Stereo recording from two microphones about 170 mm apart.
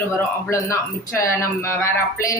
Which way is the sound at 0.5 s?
15° left (ahead or behind).